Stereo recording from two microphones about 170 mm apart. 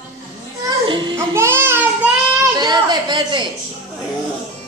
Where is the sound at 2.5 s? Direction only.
25° right (ahead or behind).